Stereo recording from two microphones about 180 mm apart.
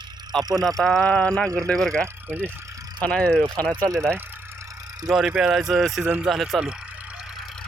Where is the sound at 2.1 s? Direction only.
10° right (ahead or behind).